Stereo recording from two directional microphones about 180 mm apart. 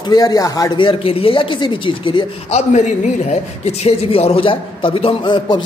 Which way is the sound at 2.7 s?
40° left (ahead or behind).